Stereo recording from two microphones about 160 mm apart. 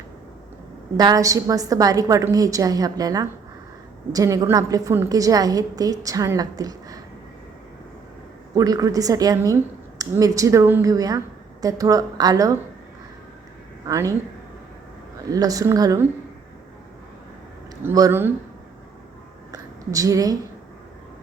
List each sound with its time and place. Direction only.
0.9 s a woman's voice: 25° right (ahead or behind)
8.5 s a woman's voice: 25° right (ahead or behind)
13.8 s a woman's voice: 20° right (ahead or behind)
15.3 s a woman's voice: 20° right (ahead or behind)
17.8 s speech: 20° right (ahead or behind)
19.5 s a sound: 20° right (ahead or behind)